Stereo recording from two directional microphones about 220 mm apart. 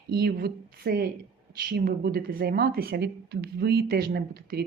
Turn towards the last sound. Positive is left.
turn(degrees=-45)  # may be behind; listen again after turning